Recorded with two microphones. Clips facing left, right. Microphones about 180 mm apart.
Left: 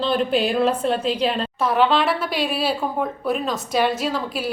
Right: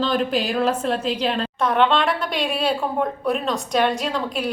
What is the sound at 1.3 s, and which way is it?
A woman's voice, 5° left (ahead or behind).